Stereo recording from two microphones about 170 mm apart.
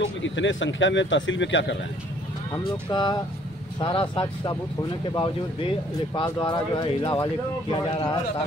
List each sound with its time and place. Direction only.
0.0 s speech: 90° left
2.5 s speech: 25° left (ahead or behind)